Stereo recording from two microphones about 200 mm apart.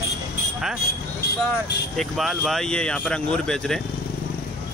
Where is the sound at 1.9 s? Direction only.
Centre (ahead or behind).